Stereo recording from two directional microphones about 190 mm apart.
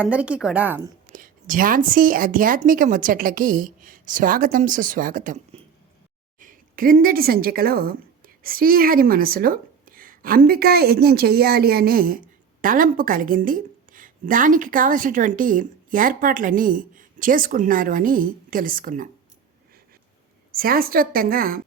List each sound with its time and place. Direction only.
0.0 s a woman's voice: 5° right (ahead or behind)
1.1 s a woman's voice: 45° right (ahead or behind)
6.4 s a woman's voice: 45° right (ahead or behind)
20.5 s a woman's voice: 50° right (ahead or behind)